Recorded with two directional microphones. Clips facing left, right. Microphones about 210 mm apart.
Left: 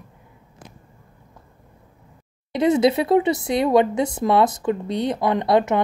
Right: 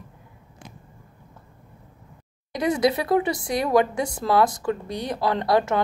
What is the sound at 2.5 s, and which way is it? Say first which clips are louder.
Speech: left 5 dB; 25° left (ahead or behind).